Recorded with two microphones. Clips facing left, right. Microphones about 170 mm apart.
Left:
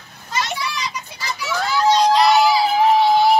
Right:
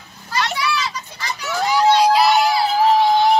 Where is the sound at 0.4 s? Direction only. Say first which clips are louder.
Right 3 dB; 65° right (ahead or behind).